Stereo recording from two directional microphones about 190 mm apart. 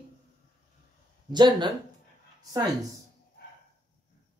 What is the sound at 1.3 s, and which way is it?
Speech, 25° right (ahead or behind).